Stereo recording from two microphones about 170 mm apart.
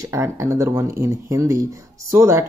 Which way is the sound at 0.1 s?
15° right (ahead or behind).